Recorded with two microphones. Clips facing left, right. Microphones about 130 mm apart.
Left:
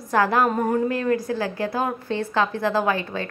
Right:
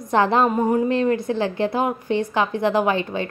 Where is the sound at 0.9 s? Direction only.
25° right (ahead or behind).